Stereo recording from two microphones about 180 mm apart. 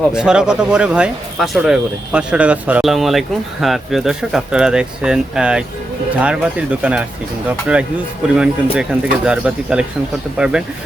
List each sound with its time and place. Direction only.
0.1 s speech: 5° right (ahead or behind)